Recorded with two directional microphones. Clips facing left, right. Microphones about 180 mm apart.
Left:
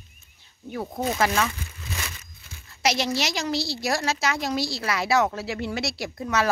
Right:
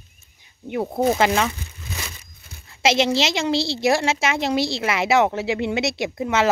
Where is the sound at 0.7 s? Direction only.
30° right (ahead or behind).